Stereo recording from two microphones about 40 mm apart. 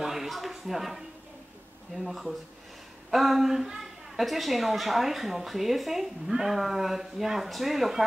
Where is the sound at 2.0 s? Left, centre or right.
Centre.